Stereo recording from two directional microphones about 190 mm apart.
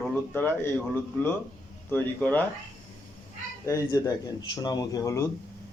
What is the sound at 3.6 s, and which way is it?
A man's voice, 15° left (ahead or behind).